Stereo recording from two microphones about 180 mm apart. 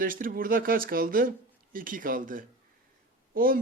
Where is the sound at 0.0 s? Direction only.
50° right (ahead or behind).